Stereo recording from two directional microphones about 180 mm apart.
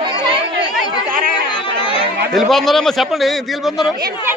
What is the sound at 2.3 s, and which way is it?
A woman's voice, centre (ahead or behind).